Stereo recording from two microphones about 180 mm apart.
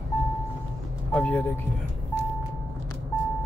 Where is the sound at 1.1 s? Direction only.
10° left (ahead or behind).